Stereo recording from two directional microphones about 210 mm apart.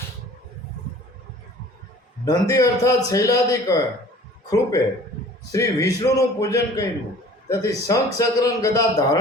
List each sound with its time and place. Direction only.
2.2 s a man's voice: 15° left (ahead or behind)